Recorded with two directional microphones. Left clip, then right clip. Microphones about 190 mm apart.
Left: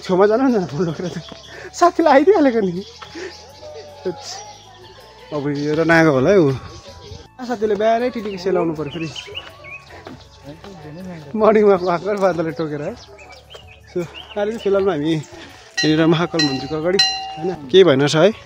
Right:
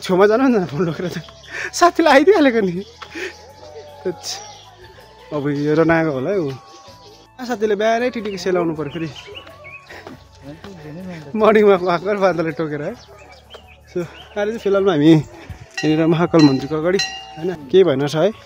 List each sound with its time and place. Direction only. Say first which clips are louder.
0.0 s speech: right 1 dB; 15° right (ahead or behind)
5.6 s speech: right 4 dB; 45° right (ahead or behind)
6.0 s speech: left 7 dB; 35° left (ahead or behind)
7.3 s speech: even; 5° right (ahead or behind)
10.6 s speech: right 1 dB; 15° right (ahead or behind)
13.9 s speech: even; 5° right (ahead or behind)
14.9 s speech: right 6 dB; 50° right (ahead or behind)
15.8 s speech: left 1 dB; 10° right (ahead or behind)
16.3 s speech: right 6 dB; 50° right (ahead or behind)
17.5 s speech: left 1 dB; 10° right (ahead or behind)
17.8 s speech: left 4 dB; 10° left (ahead or behind)